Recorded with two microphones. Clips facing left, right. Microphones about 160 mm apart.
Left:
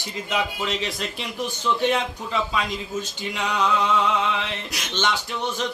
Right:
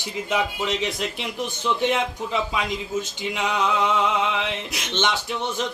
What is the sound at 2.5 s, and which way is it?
Speech, 20° right (ahead or behind).